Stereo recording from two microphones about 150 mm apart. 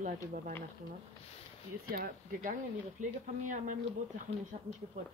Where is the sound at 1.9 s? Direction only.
75° right (ahead or behind).